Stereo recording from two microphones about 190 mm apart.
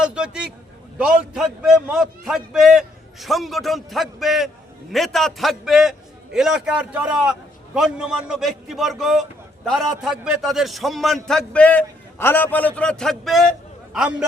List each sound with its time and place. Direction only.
0.0 s a man's voice: 5° right (ahead or behind)